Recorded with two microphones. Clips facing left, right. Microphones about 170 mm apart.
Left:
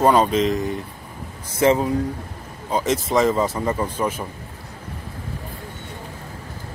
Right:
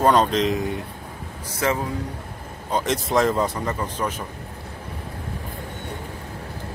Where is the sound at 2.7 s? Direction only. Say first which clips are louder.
Left 2 dB; centre (ahead or behind).